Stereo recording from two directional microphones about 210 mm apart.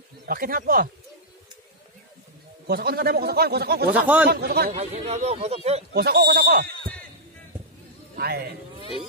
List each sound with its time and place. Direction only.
0.3 s a man's voice: 45° right (ahead or behind)
2.6 s a man's voice: 50° right (ahead or behind)
3.9 s speech: 5° right (ahead or behind)
4.3 s a man's voice: 50° right (ahead or behind)
4.6 s speech: 30° right (ahead or behind)
5.9 s a man's voice: 50° right (ahead or behind)
8.2 s a man's voice: 45° right (ahead or behind)